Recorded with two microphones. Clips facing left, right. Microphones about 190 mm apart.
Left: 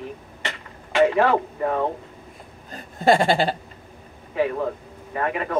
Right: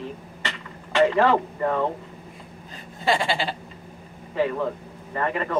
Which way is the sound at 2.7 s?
45° left (ahead or behind).